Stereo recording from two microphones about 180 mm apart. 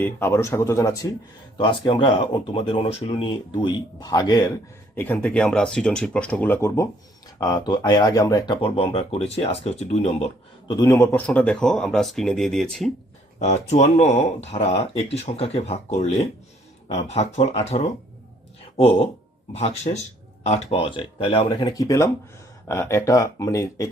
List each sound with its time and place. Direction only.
0.0 s speech: 10° left (ahead or behind)
1.5 s speech: 25° left (ahead or behind)
4.9 s speech: 10° left (ahead or behind)
8.6 s speech: 30° left (ahead or behind)
10.7 s speech: 15° left (ahead or behind); by 12.9 s centre (ahead or behind)
13.4 s speech: 40° left (ahead or behind); by 23.9 s 20° left (ahead or behind)